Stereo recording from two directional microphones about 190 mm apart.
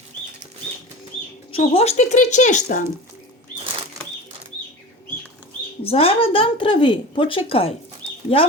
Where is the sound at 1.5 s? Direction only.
30° left (ahead or behind).